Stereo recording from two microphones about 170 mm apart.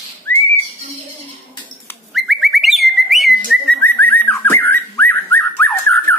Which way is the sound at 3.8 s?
10° left (ahead or behind).